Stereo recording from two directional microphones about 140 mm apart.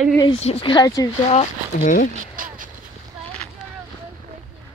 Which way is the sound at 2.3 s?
80° right.